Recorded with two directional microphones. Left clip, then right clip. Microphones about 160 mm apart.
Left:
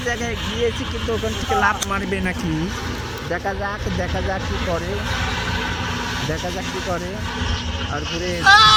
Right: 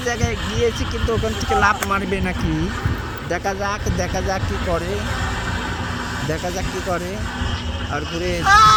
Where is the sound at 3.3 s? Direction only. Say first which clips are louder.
Right 2 dB; 25° right (ahead or behind).